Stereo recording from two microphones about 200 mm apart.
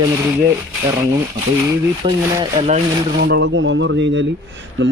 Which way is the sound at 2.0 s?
25° right (ahead or behind).